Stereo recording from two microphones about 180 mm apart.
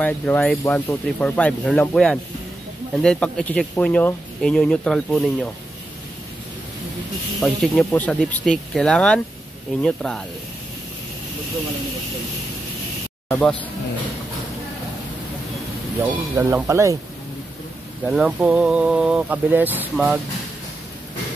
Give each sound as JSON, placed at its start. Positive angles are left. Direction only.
{"t": 0.0, "sound": "speech", "side_deg": 10}
{"t": 7.3, "sound": "speech", "side_deg": 0}
{"t": 16.1, "sound": "speech", "side_deg": -15}
{"t": 18.0, "sound": "speech", "side_deg": 0}